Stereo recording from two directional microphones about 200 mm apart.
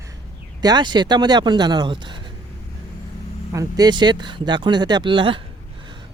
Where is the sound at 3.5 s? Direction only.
20° right (ahead or behind).